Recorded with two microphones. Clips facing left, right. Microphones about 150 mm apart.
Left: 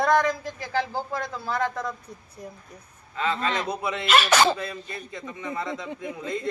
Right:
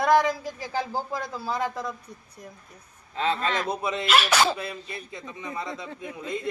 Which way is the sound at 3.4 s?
20° left (ahead or behind).